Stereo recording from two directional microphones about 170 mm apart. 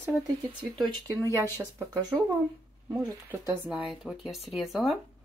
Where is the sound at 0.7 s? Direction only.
20° right (ahead or behind).